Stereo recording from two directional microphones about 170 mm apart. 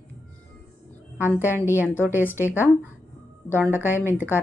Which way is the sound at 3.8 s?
10° right (ahead or behind).